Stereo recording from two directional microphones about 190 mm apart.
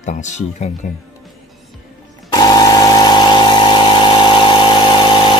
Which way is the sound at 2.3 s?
20° left (ahead or behind).